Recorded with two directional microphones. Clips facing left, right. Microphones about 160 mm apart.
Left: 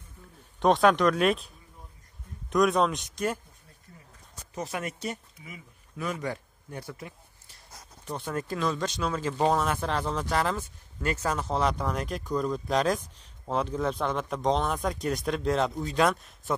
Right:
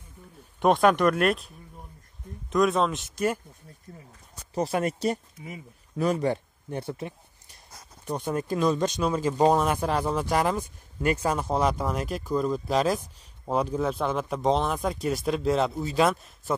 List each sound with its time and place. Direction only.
0.6 s speech: 5° right (ahead or behind)
2.5 s speech: centre (ahead or behind)
4.6 s speech: 35° right (ahead or behind); by 16.5 s 5° right (ahead or behind)